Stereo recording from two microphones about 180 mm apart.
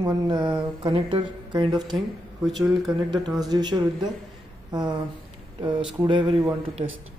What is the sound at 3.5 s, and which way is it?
Speech, 25° right (ahead or behind).